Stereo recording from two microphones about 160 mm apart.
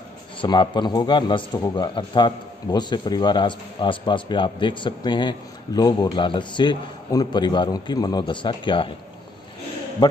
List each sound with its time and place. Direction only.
0.4 s a man's voice: 30° left (ahead or behind)